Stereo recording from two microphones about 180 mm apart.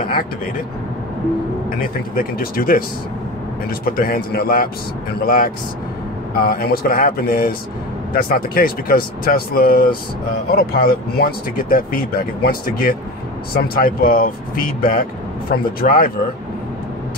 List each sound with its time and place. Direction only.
1.8 s speech: 55° left (ahead or behind)
3.8 s speech: 55° left (ahead or behind)